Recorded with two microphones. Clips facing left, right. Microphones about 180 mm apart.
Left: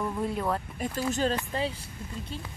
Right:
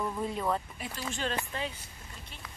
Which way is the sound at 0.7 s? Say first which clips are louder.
Left 8 dB; 45° left (ahead or behind).